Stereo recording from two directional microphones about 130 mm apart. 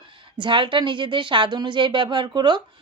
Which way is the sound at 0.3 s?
40° right (ahead or behind).